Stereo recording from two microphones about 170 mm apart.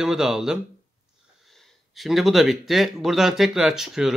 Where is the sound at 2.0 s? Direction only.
Centre (ahead or behind).